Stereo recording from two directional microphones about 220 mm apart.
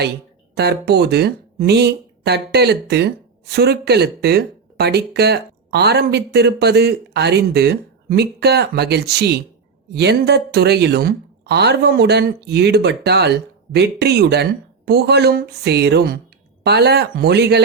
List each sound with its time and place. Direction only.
0.5 s speech: 45° right (ahead or behind)